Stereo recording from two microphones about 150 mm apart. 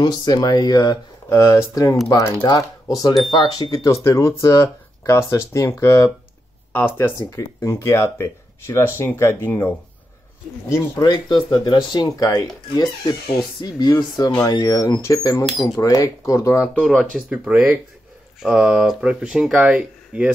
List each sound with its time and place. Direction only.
0.0 s speech: 30° left (ahead or behind)
10.7 s speech: 25° left (ahead or behind); by 17.2 s centre (ahead or behind)
17.3 s speech: 10° right (ahead or behind)